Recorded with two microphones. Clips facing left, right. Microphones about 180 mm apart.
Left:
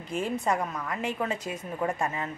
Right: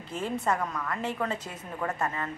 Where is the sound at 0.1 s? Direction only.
15° left (ahead or behind).